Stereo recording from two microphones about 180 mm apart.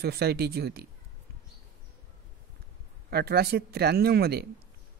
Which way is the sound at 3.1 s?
60° right (ahead or behind).